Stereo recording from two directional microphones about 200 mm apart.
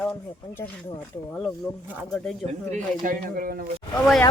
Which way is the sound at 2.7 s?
40° right (ahead or behind).